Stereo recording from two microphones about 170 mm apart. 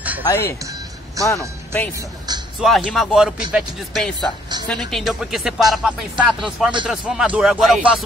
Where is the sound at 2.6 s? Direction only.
Centre (ahead or behind).